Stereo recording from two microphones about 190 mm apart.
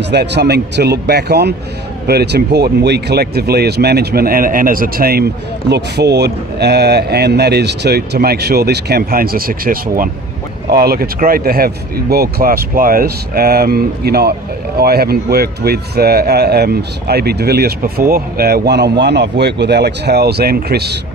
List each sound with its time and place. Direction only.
0.0 s speech: 60° right (ahead or behind)